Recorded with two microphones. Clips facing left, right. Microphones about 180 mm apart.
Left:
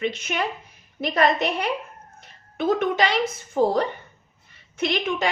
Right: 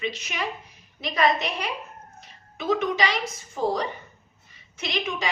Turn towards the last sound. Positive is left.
turn(degrees=55)  # may be behind; listen again after turning